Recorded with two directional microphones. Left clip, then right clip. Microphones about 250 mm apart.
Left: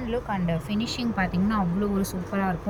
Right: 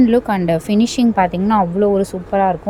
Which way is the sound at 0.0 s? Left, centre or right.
Right.